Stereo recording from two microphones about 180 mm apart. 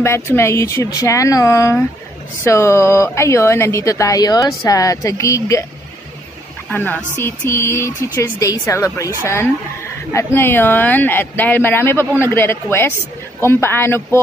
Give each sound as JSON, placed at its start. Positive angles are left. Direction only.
{"t": 0.0, "sound": "speech", "side_deg": 15}
{"t": 6.7, "sound": "speech", "side_deg": 10}